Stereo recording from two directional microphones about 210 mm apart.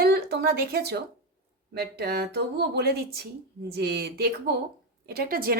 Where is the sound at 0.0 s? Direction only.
50° right (ahead or behind).